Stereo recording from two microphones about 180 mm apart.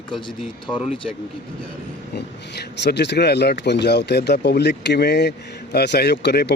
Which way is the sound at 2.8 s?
70° left (ahead or behind).